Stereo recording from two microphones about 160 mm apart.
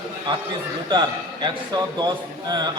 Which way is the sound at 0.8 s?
30° right (ahead or behind).